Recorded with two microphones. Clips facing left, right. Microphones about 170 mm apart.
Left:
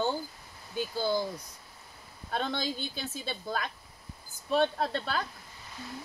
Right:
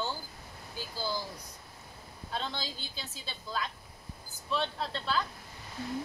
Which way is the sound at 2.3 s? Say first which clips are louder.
Left 5 dB; 55° left (ahead or behind).